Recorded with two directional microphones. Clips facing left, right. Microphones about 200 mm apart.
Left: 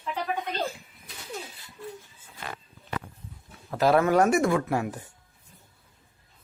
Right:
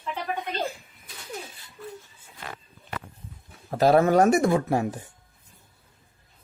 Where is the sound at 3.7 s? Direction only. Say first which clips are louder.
Right 3 dB; 35° right (ahead or behind).